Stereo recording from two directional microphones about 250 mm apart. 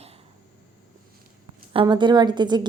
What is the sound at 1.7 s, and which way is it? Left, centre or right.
Speech, centre.